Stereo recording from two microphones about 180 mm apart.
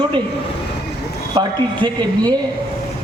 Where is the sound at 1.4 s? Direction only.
25° right (ahead or behind).